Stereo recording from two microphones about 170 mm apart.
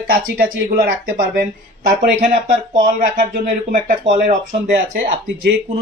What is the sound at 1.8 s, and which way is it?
Speech, 45° right (ahead or behind).